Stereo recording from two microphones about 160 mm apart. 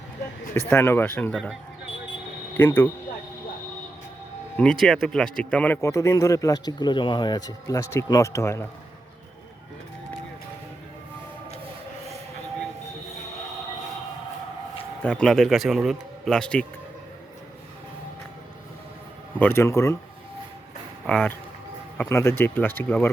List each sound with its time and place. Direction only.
0.5 s speech: 15° left (ahead or behind)
2.6 s speech: 10° left (ahead or behind)
4.5 s speech: 5° left (ahead or behind)
15.0 s speech: 5° left (ahead or behind)
19.4 s speech: 15° left (ahead or behind)
21.1 s speech: 5° left (ahead or behind)
22.1 s speech: 15° left (ahead or behind)